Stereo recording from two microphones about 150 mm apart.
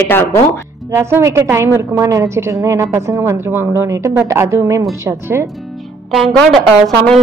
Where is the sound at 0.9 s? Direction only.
20° right (ahead or behind).